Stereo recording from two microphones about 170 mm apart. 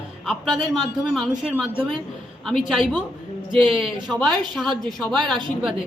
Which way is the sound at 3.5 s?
30° right (ahead or behind).